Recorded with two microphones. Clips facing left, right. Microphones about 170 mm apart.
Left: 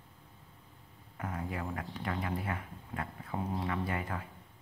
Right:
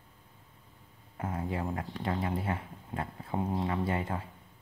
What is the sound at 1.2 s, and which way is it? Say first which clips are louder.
Speech: right 4 dB; 25° right (ahead or behind).